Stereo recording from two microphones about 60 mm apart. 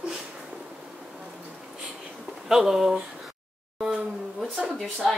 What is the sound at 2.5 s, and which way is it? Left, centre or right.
Speech, centre.